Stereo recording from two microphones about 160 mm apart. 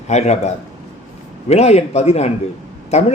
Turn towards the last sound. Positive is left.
turn(degrees=40)  # may be behind; listen again after turning